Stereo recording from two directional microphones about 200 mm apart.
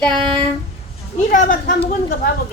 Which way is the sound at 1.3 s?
45° left (ahead or behind).